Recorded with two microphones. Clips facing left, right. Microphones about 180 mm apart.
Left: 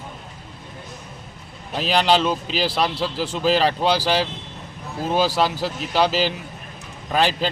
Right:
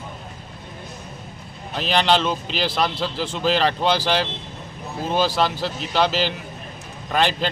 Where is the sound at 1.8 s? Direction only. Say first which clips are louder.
Left 1 dB; 10° left (ahead or behind).